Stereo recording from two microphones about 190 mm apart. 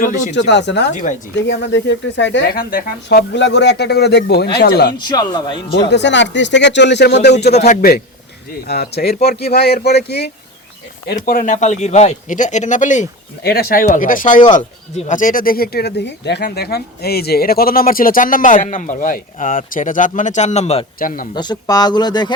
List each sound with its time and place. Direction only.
0.0 s speech: 40° left (ahead or behind)
0.3 s speech: 65° left (ahead or behind)
4.9 s speech: 20° left (ahead or behind)
5.9 s speech: 70° left (ahead or behind)
7.3 s speech: 35° left (ahead or behind)
7.8 s speech: 50° left (ahead or behind)
11.1 s speech: 50° left (ahead or behind)
13.4 s speech: 55° left (ahead or behind); by 20.8 s 35° left (ahead or behind)
21.0 s speech: 45° left (ahead or behind)
21.3 s speech: 20° left (ahead or behind)